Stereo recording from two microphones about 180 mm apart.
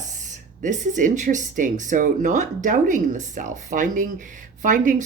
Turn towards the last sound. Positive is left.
turn(degrees=-45)  # may be behind; listen again after turning